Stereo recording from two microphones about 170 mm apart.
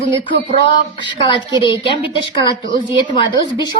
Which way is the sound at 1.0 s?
30° left (ahead or behind).